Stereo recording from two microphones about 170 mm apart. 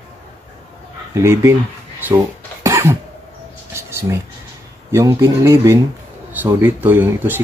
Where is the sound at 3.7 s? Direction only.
15° right (ahead or behind).